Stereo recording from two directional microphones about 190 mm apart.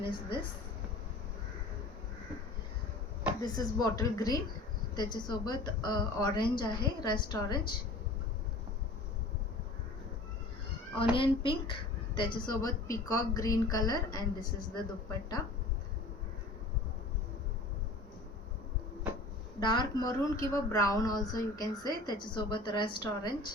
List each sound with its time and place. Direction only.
0.0 s a woman's voice: 25° left (ahead or behind)
3.4 s a woman's voice: 20° left (ahead or behind)
11.1 s a woman's voice: 25° left (ahead or behind)
19.5 s a woman's voice: 25° left (ahead or behind)